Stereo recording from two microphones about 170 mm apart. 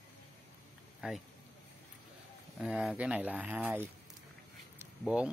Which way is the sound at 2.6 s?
5° right (ahead or behind).